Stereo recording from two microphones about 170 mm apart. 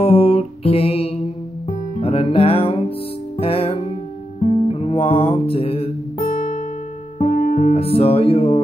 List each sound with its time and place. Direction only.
0.0 s music: 35° left (ahead or behind)
7.2 s music: 50° left (ahead or behind)